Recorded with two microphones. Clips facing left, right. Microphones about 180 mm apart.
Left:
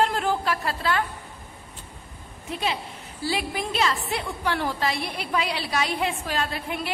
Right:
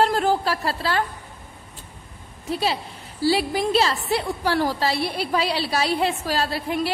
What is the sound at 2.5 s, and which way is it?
A woman's voice, 35° right (ahead or behind).